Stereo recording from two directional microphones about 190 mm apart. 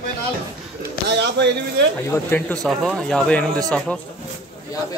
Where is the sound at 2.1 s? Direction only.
10° left (ahead or behind).